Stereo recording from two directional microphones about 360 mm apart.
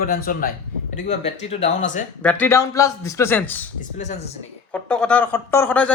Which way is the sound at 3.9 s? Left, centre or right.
Centre.